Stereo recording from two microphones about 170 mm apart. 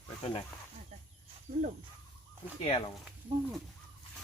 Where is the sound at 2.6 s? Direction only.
35° left (ahead or behind).